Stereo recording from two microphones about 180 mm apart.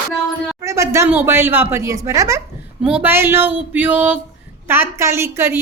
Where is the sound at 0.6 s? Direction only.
15° right (ahead or behind).